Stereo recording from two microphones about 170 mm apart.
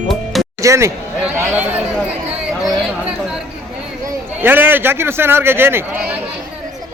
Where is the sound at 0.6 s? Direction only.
15° right (ahead or behind).